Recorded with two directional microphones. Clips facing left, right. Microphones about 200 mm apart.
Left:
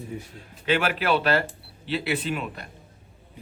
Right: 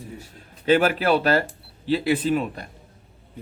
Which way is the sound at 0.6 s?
40° right (ahead or behind).